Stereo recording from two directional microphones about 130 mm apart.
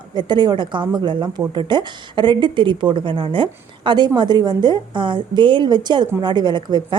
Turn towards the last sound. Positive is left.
turn(degrees=-35)  # may be behind; listen again after turning